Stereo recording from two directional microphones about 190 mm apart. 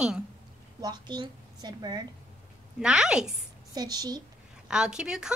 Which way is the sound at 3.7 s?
20° right (ahead or behind).